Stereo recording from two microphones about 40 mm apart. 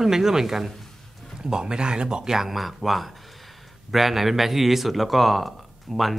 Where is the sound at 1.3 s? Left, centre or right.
Centre.